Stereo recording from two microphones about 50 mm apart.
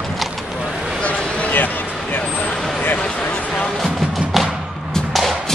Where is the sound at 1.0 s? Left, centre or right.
Left.